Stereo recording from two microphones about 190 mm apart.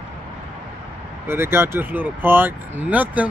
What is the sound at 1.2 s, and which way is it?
Speech, 10° right (ahead or behind).